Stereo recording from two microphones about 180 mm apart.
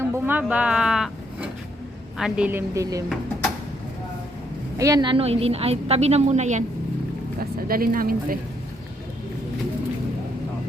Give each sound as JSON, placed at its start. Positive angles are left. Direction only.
{"t": 0.0, "sound": "a sound", "side_deg": -10}
{"t": 2.1, "sound": "a woman's voice", "side_deg": -5}
{"t": 4.8, "sound": "a woman's voice", "side_deg": -20}
{"t": 7.3, "sound": "speech", "side_deg": -55}